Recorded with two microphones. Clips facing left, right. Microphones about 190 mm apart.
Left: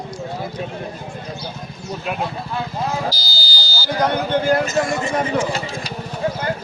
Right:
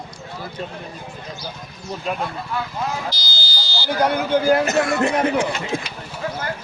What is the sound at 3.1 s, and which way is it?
Buzzer, 35° left (ahead or behind).